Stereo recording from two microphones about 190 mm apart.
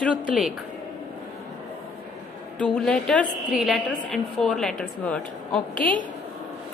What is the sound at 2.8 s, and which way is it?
A woman's voice, 5° left (ahead or behind).